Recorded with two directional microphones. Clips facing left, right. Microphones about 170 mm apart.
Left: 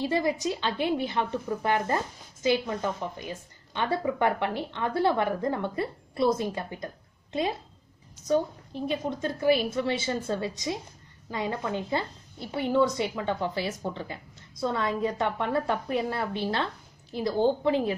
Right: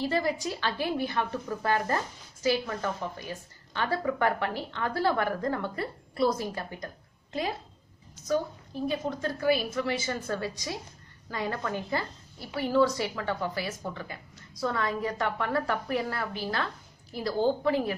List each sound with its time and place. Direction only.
0.0 s a woman's voice: 20° left (ahead or behind)
8.3 s a woman's voice: 25° left (ahead or behind)